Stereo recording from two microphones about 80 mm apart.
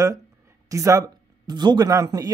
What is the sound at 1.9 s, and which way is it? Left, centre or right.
Speech, right.